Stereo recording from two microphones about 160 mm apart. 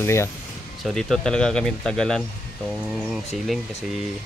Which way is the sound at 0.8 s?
Centre (ahead or behind).